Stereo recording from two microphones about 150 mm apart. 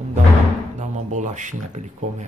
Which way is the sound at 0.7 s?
55° right (ahead or behind).